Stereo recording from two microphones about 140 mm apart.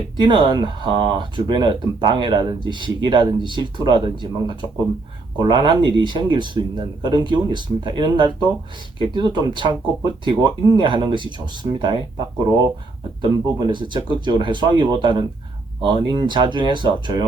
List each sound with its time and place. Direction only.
0.2 s speech: 35° right (ahead or behind)